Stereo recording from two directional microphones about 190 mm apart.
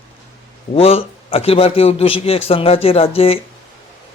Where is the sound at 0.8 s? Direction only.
30° left (ahead or behind).